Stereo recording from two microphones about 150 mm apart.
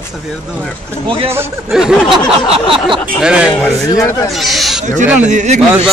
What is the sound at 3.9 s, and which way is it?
Speech, 25° left (ahead or behind).